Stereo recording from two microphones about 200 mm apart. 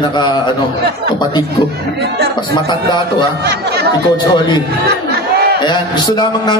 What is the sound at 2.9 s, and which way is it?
Speech, 20° left (ahead or behind).